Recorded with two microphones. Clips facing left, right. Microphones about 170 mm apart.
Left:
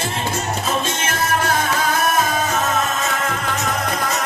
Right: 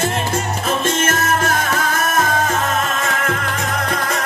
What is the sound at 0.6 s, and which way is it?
Music, 50° right (ahead or behind).